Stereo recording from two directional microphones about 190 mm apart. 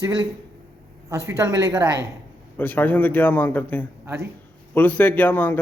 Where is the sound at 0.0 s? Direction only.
25° right (ahead or behind).